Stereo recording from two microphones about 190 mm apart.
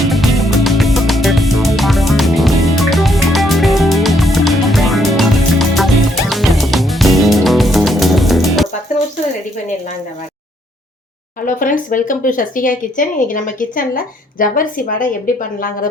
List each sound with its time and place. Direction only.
0.1 s music: centre (ahead or behind)
11.4 s speech: 45° left (ahead or behind)